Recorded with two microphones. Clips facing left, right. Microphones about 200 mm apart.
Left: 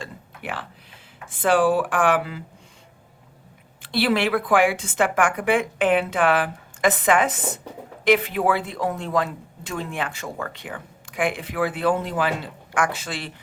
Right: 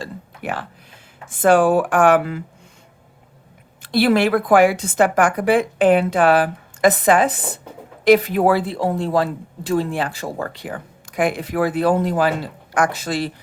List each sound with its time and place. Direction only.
0.0 s a sound: 45° right (ahead or behind)
1.3 s speech: 45° right (ahead or behind)
3.8 s speech: 45° right (ahead or behind)